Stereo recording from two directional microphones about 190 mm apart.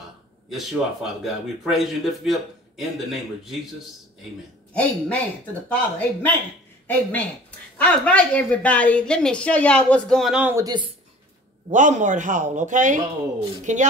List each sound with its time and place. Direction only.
0.5 s a woman's voice: centre (ahead or behind)
4.7 s a woman's voice: 5° left (ahead or behind); by 10.9 s 20° right (ahead or behind)
11.7 s speech: 40° right (ahead or behind)